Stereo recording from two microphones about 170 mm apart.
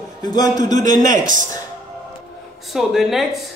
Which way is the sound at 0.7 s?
50° right (ahead or behind).